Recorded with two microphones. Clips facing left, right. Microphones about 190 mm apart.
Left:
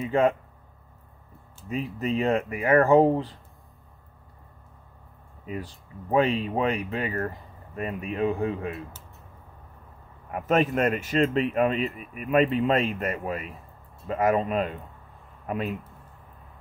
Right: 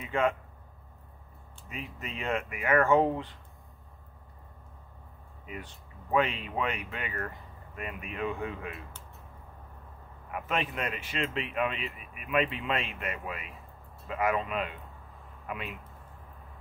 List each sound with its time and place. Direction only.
0.0 s speech: 35° left (ahead or behind)
1.7 s speech: 35° left (ahead or behind)
5.4 s speech: 35° left (ahead or behind)
10.3 s speech: 40° left (ahead or behind)